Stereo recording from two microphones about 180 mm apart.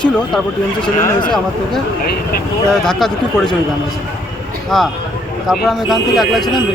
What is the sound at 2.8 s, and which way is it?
Speech, centre (ahead or behind).